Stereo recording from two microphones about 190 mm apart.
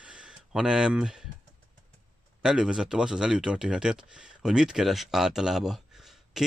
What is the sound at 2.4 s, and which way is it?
Speech, 5° right (ahead or behind).